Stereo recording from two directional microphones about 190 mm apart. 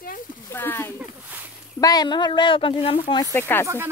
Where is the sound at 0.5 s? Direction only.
10° left (ahead or behind); by 3.2 s 30° left (ahead or behind).